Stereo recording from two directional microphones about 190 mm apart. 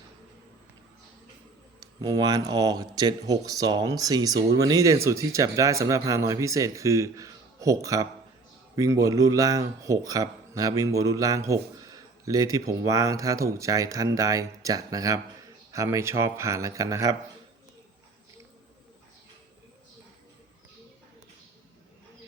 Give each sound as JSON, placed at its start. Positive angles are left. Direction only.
{"t": 2.0, "sound": "speech", "side_deg": -20}